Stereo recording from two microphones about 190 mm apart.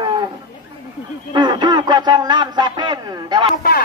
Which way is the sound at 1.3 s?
25° right (ahead or behind).